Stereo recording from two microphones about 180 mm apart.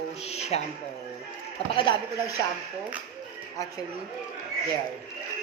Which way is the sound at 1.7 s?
25° left (ahead or behind).